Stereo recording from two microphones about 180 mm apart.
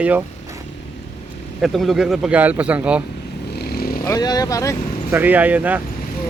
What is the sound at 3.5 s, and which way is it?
Vehicle, 60° left (ahead or behind).